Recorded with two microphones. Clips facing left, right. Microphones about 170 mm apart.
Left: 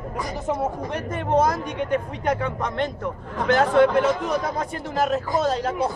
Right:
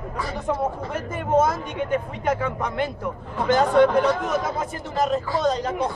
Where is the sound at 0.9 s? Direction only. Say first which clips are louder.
Right 1 dB; 5° right (ahead or behind).